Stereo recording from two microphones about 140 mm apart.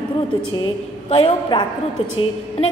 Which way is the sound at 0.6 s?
45° left (ahead or behind).